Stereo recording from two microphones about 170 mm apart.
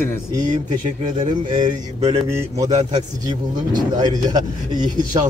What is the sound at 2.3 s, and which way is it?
Speech, 15° right (ahead or behind).